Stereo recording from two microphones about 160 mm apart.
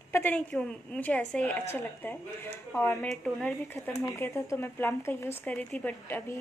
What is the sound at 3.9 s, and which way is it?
Speech, 20° left (ahead or behind).